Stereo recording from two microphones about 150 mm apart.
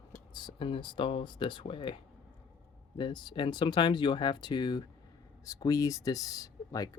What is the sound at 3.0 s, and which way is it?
Speech, 30° left (ahead or behind).